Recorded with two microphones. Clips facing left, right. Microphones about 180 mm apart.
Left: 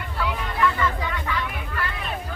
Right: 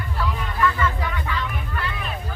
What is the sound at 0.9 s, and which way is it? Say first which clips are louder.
Music: even; 10° left (ahead or behind).